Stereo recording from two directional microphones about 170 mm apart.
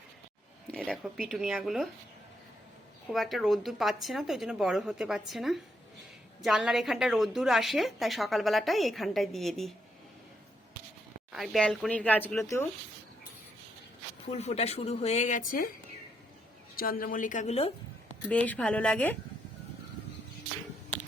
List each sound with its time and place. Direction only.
0.7 s a woman's voice: 5° left (ahead or behind)
3.1 s a woman's voice: centre (ahead or behind)
11.3 s a woman's voice: centre (ahead or behind)
14.3 s speech: 35° left (ahead or behind); by 15.7 s 55° left (ahead or behind)
16.7 s a woman's voice: 60° left (ahead or behind); by 17.7 s 40° left (ahead or behind)
18.3 s speech: 10° left (ahead or behind)